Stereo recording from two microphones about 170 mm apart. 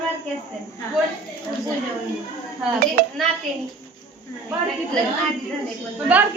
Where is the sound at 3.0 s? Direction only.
65° right (ahead or behind).